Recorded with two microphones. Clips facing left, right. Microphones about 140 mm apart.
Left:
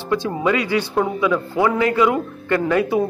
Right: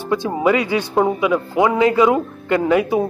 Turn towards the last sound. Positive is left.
turn(degrees=-15)  # may be behind; listen again after turning